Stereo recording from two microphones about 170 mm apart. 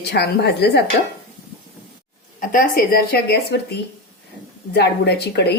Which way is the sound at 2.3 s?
55° left (ahead or behind).